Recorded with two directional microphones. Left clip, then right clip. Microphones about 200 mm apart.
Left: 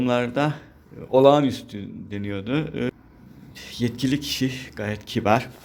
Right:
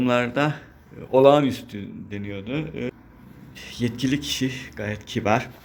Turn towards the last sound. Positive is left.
turn(degrees=10)  # may be behind; listen again after turning